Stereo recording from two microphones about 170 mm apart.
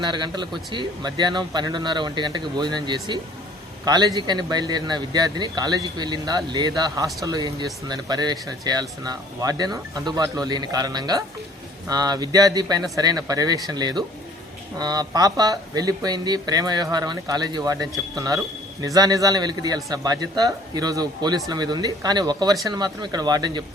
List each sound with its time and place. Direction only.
0.0 s speech: 25° right (ahead or behind)